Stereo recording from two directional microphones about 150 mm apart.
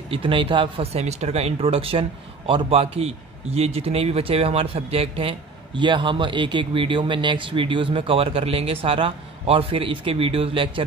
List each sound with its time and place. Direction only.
0.1 s speech: 35° right (ahead or behind)